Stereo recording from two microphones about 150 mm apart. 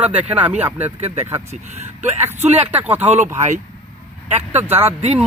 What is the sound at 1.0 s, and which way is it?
Speech, 45° right (ahead or behind).